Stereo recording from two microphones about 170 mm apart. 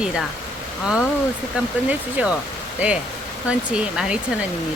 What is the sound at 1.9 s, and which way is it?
Speech, 10° right (ahead or behind).